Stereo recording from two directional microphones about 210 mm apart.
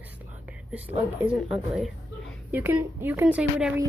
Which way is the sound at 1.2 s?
5° right (ahead or behind).